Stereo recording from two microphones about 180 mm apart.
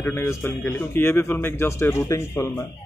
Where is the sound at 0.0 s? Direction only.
15° left (ahead or behind).